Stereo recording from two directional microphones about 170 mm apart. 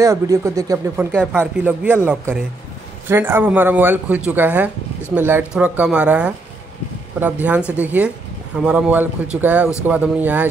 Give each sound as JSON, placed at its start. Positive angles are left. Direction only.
{"t": 0.0, "sound": "speech", "side_deg": -20}
{"t": 7.7, "sound": "speech", "side_deg": -10}